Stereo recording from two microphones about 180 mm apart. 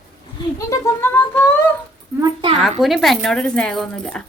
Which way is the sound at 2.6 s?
Centre (ahead or behind).